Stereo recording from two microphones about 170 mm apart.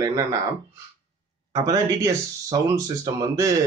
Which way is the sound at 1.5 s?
20° right (ahead or behind).